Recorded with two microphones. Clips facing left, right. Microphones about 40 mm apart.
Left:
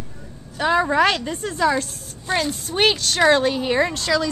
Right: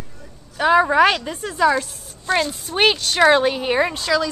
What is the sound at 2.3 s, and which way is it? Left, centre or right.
Speech, centre.